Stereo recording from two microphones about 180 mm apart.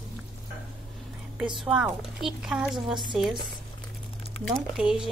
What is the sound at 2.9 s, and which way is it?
Speech, 25° right (ahead or behind).